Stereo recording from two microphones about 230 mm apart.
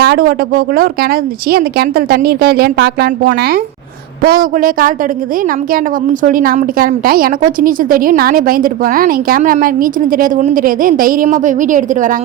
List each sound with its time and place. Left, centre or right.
0.0 s a woman's voice: right
6.2 s a woman's voice: right